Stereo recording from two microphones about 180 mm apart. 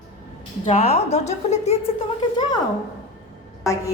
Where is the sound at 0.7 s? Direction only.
35° left (ahead or behind).